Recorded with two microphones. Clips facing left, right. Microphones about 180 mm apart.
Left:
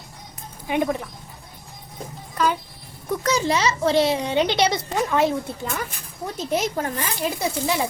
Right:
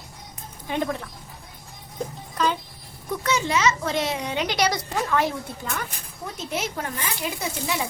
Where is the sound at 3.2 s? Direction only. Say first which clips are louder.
Left 1 dB; 35° left (ahead or behind).